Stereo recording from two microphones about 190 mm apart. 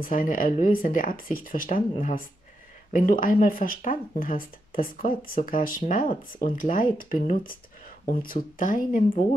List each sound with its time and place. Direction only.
0.0 s speech: 45° left (ahead or behind)